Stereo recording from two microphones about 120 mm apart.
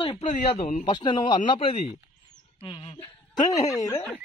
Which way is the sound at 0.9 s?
40° left (ahead or behind).